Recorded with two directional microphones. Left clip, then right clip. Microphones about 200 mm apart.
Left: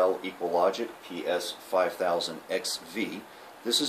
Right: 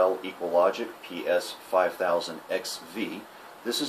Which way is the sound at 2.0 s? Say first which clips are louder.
Right 1 dB; 35° left (ahead or behind).